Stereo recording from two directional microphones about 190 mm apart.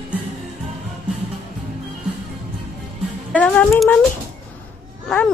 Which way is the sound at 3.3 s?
5° left (ahead or behind).